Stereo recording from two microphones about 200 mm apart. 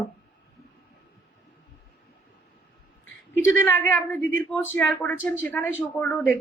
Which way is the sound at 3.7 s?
10° left (ahead or behind).